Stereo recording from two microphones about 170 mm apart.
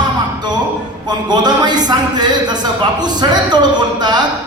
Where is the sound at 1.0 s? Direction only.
25° right (ahead or behind).